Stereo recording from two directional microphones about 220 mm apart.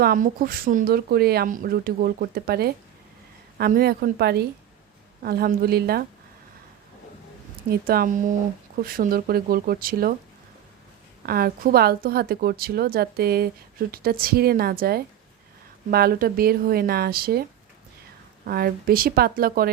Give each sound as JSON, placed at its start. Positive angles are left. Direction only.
{"t": 0.0, "sound": "a woman's voice", "side_deg": -40}
{"t": 7.7, "sound": "speech", "side_deg": -45}
{"t": 11.3, "sound": "a woman's voice", "side_deg": -45}
{"t": 18.4, "sound": "a woman's voice", "side_deg": -45}